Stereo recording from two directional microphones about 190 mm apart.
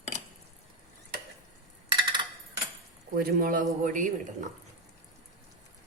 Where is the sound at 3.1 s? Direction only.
50° right (ahead or behind).